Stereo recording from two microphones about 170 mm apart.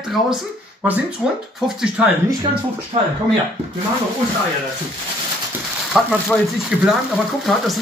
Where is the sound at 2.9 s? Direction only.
40° right (ahead or behind).